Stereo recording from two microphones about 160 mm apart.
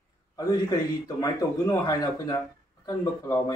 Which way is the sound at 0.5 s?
20° left (ahead or behind).